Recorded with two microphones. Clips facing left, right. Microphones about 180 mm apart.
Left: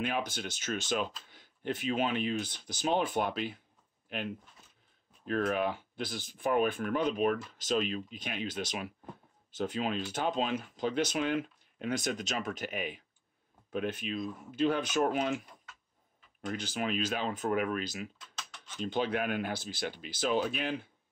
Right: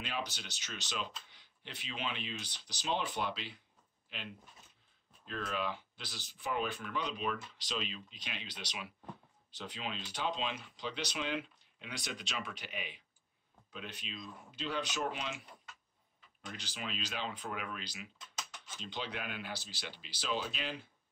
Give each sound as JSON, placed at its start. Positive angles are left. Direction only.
{"t": 0.0, "sound": "speech", "side_deg": 50}